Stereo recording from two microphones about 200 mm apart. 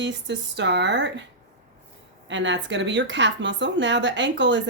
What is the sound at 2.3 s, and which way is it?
Speech, 65° right (ahead or behind).